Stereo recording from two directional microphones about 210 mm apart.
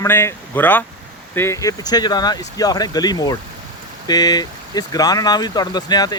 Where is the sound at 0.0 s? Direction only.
10° left (ahead or behind).